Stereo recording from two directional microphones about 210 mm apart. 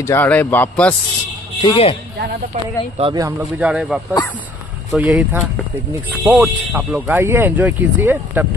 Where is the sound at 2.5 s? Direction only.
35° right (ahead or behind).